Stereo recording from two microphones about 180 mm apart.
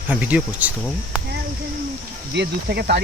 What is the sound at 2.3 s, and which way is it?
Speech, 65° right (ahead or behind).